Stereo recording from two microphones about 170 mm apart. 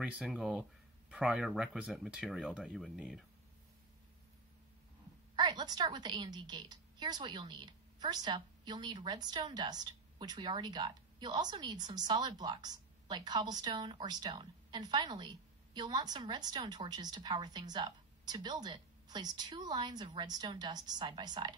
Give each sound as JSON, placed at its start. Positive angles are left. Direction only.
{"t": 0.0, "sound": "speech", "side_deg": -5}
{"t": 5.3, "sound": "a woman's voice", "side_deg": -25}